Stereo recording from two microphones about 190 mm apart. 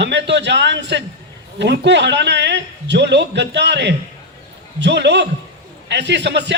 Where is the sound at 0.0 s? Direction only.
65° right (ahead or behind).